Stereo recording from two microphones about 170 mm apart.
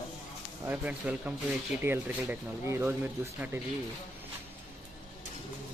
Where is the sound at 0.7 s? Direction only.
10° right (ahead or behind).